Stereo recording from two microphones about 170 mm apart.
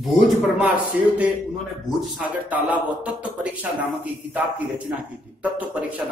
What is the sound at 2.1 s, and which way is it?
Speech, 10° right (ahead or behind).